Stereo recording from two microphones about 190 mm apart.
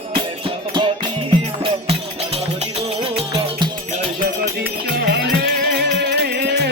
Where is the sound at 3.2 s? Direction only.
25° right (ahead or behind).